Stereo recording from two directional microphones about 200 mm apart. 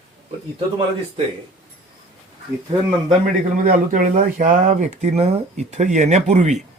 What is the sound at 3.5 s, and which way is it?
Speech, 45° right (ahead or behind).